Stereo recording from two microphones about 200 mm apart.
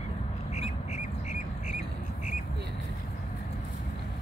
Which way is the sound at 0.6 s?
35° left (ahead or behind).